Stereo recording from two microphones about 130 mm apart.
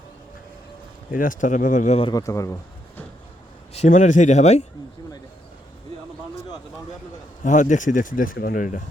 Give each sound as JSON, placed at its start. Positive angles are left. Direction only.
{"t": 1.1, "sound": "speech", "side_deg": 90}
{"t": 2.1, "sound": "speech", "side_deg": 25}
{"t": 3.7, "sound": "speech", "side_deg": 65}
{"t": 7.4, "sound": "speech", "side_deg": 70}